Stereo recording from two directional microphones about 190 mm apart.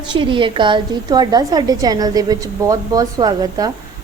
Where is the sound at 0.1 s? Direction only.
25° right (ahead or behind).